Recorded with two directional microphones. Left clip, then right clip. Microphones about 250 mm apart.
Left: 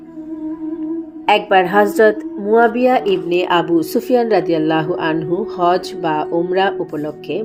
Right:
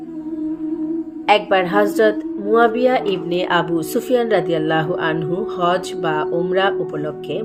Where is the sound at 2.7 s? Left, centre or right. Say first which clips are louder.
Left 2 dB; left.